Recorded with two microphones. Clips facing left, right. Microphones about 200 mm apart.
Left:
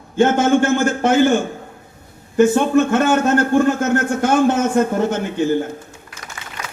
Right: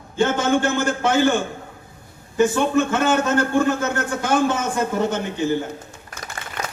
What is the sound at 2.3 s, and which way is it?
A man's voice, 55° left (ahead or behind).